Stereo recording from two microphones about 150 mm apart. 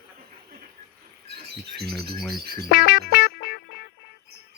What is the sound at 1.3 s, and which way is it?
Rodents, 90° right.